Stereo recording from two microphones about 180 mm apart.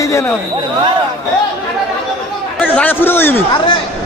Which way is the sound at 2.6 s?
10° left (ahead or behind).